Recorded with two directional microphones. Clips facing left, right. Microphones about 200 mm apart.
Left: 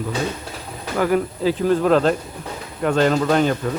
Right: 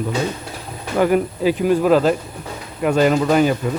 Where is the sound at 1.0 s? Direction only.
20° right (ahead or behind).